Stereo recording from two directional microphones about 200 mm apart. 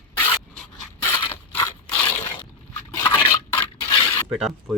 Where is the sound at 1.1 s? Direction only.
10° left (ahead or behind).